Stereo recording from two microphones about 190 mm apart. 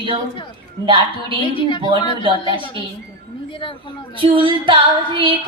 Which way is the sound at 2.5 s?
25° right (ahead or behind).